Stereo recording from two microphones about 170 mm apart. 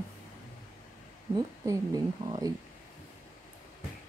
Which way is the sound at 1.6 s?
20° right (ahead or behind).